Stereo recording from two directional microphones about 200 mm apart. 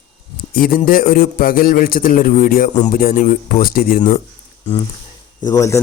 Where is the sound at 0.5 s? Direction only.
45° left (ahead or behind).